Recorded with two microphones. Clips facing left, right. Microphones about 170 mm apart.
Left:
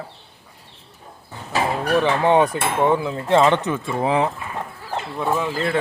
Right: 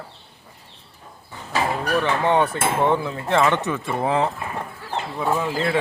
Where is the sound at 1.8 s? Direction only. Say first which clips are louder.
Left 5 dB; 25° left (ahead or behind).